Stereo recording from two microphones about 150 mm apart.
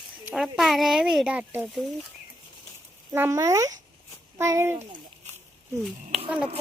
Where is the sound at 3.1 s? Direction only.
20° right (ahead or behind).